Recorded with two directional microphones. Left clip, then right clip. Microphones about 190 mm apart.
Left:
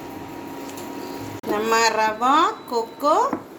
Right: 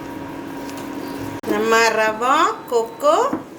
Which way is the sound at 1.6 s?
35° left (ahead or behind).